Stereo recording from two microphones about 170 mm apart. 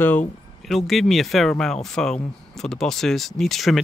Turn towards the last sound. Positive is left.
turn(degrees=0)  # may be behind; listen again after turning